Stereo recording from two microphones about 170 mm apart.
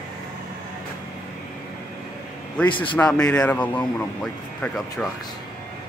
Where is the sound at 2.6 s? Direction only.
30° left (ahead or behind).